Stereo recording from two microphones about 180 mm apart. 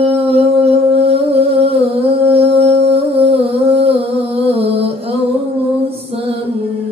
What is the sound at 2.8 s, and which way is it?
Music, 35° right (ahead or behind).